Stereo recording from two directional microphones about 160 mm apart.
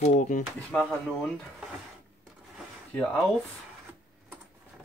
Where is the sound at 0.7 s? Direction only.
10° left (ahead or behind).